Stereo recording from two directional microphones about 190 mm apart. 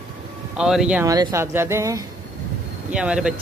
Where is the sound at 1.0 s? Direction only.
20° right (ahead or behind).